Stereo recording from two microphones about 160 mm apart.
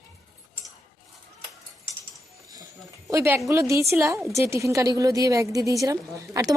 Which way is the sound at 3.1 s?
20° right (ahead or behind).